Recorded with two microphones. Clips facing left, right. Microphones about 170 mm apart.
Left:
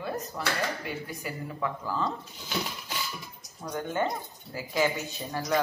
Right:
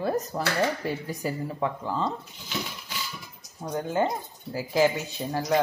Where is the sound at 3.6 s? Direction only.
30° right (ahead or behind).